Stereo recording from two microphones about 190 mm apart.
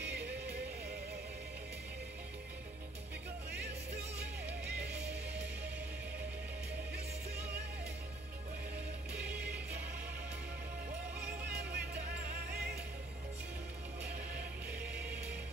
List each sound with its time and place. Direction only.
0.0 s music: 60° right (ahead or behind)
11.7 s music: 60° right (ahead or behind)
14.7 s music: 5° right (ahead or behind)